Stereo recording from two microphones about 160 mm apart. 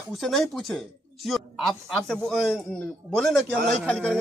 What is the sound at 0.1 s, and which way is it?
Speech, centre (ahead or behind).